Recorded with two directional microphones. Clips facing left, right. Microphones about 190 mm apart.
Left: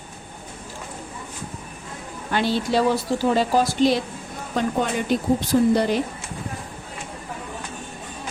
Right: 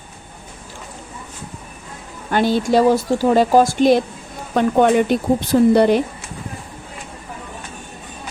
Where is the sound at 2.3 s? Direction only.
50° right (ahead or behind).